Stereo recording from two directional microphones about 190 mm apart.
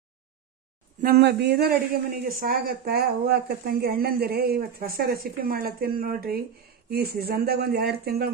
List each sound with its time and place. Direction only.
1.0 s speech: 55° right (ahead or behind)